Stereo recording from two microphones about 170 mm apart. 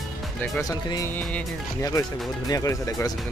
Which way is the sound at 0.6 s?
20° left (ahead or behind).